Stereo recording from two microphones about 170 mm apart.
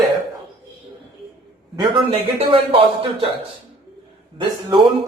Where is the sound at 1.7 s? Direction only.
30° right (ahead or behind).